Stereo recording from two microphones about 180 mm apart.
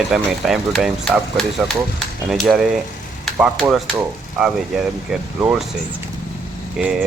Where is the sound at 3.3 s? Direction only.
5° right (ahead or behind).